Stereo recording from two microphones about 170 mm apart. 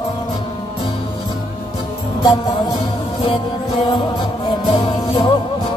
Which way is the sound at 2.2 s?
20° left (ahead or behind).